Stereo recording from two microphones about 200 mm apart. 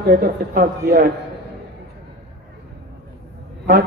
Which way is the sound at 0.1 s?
50° right (ahead or behind).